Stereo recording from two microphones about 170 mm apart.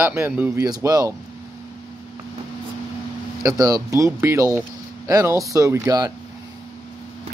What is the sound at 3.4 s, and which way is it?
A man's voice, 20° right (ahead or behind).